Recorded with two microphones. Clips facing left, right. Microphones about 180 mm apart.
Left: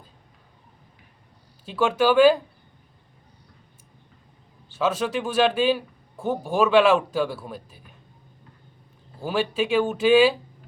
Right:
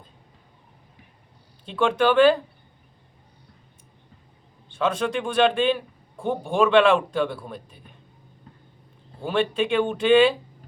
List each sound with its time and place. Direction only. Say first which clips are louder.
1.6 s speech: even; 5° left (ahead or behind)
4.7 s a man's voice: even; 5° left (ahead or behind)
9.2 s a man's voice: right 1 dB; 5° left (ahead or behind)